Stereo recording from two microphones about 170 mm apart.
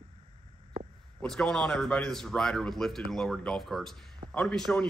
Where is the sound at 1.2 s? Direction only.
5° left (ahead or behind).